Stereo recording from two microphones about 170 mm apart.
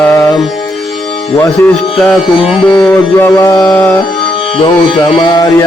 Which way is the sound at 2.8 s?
10° left (ahead or behind).